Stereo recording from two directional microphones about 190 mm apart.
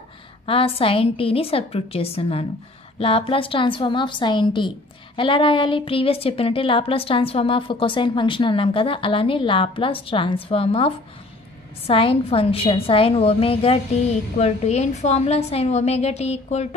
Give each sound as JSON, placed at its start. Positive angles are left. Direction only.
{"t": 0.5, "sound": "a woman's voice", "side_deg": 30}
{"t": 11.9, "sound": "a woman's voice", "side_deg": 30}